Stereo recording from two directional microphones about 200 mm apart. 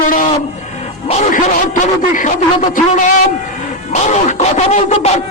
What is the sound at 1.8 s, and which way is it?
Speech, 40° left (ahead or behind).